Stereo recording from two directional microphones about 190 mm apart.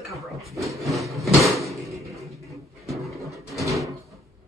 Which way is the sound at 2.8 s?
Centre (ahead or behind).